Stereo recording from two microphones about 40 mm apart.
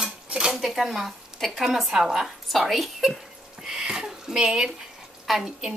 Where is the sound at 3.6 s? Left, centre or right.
Centre.